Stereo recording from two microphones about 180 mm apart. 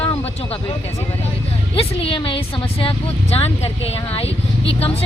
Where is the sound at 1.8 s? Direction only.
30° left (ahead or behind).